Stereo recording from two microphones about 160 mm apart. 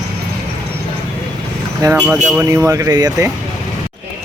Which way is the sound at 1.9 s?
5° right (ahead or behind).